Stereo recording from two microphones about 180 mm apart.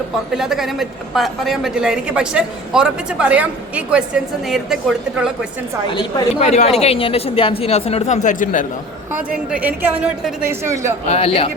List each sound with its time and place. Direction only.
0.3 s a woman's voice: centre (ahead or behind)
5.9 s a woman's voice: 25° left (ahead or behind)
6.4 s speech: 35° left (ahead or behind)
9.3 s a woman's voice: 5° right (ahead or behind)
11.1 s speech: 30° left (ahead or behind)